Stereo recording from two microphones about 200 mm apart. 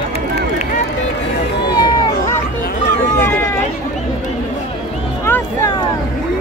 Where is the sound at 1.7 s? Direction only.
20° left (ahead or behind).